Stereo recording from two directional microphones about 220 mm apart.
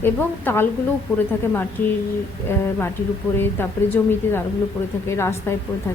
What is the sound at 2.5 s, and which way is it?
Speech, 10° left (ahead or behind).